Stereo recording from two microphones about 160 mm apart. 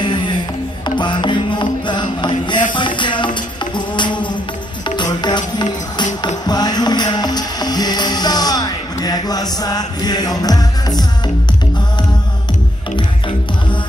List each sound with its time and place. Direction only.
0.0 s music: 30° left (ahead or behind)